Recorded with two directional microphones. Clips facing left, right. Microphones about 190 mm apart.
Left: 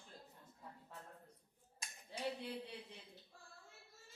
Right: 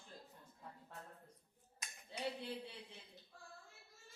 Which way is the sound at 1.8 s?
30° left (ahead or behind).